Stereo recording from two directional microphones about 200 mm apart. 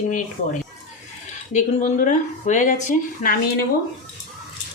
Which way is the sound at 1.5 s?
40° left (ahead or behind).